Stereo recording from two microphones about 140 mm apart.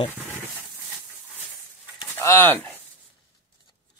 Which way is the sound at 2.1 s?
15° left (ahead or behind).